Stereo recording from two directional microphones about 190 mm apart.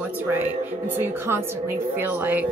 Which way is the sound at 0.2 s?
10° right (ahead or behind).